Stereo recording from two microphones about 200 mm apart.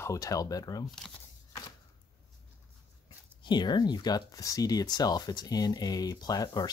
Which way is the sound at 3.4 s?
20° left (ahead or behind).